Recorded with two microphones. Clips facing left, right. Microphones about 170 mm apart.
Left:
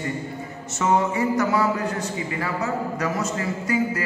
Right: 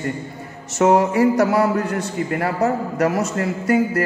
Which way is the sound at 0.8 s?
80° right.